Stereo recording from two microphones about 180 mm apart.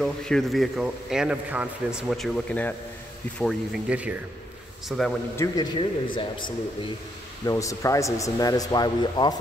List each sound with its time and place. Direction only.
0.0 s a man's voice: 5° left (ahead or behind)
5.4 s a man's voice: 15° left (ahead or behind)
5.8 s speech: 25° left (ahead or behind)